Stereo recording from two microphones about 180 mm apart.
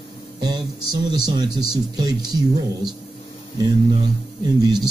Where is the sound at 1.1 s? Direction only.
25° right (ahead or behind).